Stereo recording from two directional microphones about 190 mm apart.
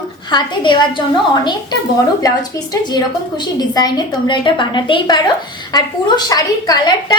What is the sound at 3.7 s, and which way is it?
Speech, 20° left (ahead or behind).